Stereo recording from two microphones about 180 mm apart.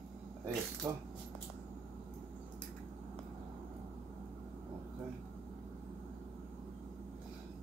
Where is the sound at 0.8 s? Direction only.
10° right (ahead or behind).